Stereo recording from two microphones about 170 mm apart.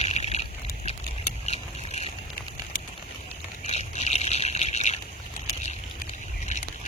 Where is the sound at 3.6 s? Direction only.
40° left (ahead or behind).